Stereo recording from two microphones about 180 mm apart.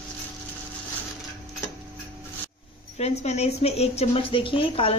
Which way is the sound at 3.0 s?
35° left (ahead or behind).